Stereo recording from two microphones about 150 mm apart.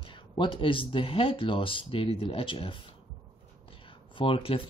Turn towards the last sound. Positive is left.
turn(degrees=40)  # may be behind; listen again after turning